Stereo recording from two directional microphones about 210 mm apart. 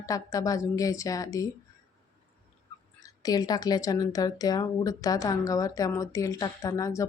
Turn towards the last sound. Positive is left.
turn(degrees=15)  # may be behind; listen again after turning